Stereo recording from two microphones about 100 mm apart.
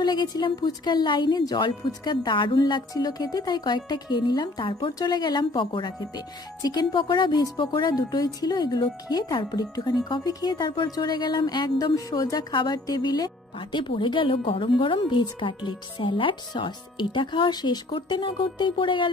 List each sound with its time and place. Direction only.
0.0 s speech: 45° left (ahead or behind)
2.9 s speech: 40° left (ahead or behind)
4.6 s speech: 60° left (ahead or behind)
4.9 s speech: 45° left (ahead or behind)
5.9 s speech: 40° left (ahead or behind)